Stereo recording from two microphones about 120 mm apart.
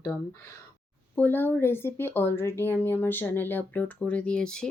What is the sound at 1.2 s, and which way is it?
Speech, 15° left (ahead or behind).